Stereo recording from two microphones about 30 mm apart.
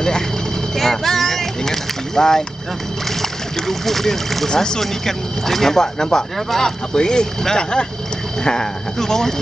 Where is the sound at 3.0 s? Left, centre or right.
Centre.